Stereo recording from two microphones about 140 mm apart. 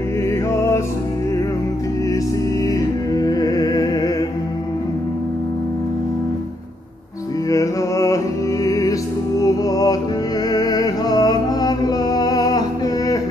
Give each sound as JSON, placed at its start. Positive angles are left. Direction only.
{"t": 2.6, "sound": "music", "side_deg": 25}
{"t": 7.4, "sound": "music", "side_deg": 25}